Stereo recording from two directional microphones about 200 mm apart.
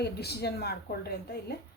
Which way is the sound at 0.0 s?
55° left (ahead or behind).